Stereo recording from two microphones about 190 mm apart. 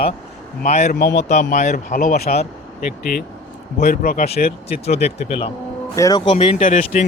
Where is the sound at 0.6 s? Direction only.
40° left (ahead or behind).